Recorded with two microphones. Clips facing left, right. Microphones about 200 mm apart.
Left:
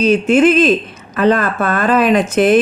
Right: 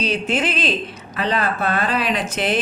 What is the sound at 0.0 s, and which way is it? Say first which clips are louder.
Speech: left 11 dB; 50° left (ahead or behind).